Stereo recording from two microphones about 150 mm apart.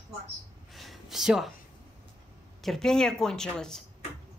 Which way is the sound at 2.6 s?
Centre (ahead or behind).